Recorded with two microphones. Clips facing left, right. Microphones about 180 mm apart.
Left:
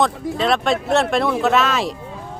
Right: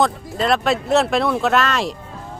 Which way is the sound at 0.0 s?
Centre (ahead or behind).